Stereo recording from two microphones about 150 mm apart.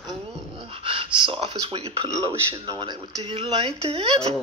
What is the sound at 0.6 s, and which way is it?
Speech, 35° right (ahead or behind).